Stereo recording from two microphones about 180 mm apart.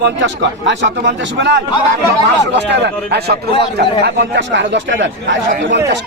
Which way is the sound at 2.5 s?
70° right (ahead or behind).